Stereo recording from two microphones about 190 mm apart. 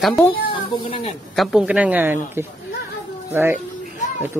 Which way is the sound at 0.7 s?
30° left (ahead or behind).